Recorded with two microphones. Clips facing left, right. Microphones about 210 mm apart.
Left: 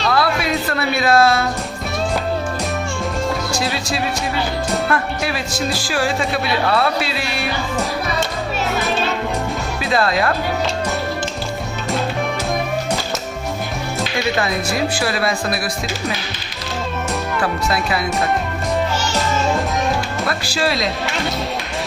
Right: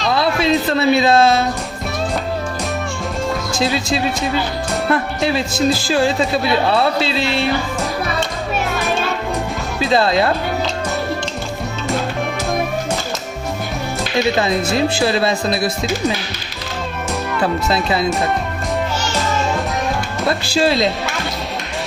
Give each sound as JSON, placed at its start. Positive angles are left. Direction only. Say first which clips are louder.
{"t": 0.1, "sound": "speech", "louder": "right 4 dB", "side_deg": -25}
{"t": 4.9, "sound": "speech", "louder": "right 3 dB", "side_deg": -25}
{"t": 9.9, "sound": "speech", "louder": "right 3 dB", "side_deg": -25}
{"t": 14.3, "sound": "speech", "louder": "right 3 dB", "side_deg": -25}
{"t": 17.4, "sound": "speech", "louder": "right 5 dB", "side_deg": -25}
{"t": 20.2, "sound": "speech", "louder": "right 7 dB", "side_deg": -25}